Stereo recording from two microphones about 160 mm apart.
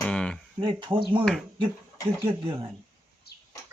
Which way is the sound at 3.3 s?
85° left.